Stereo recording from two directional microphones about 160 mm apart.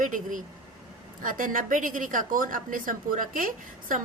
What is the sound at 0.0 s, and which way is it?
A woman's voice, 55° right (ahead or behind).